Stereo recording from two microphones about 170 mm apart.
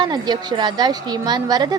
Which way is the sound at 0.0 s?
25° right (ahead or behind).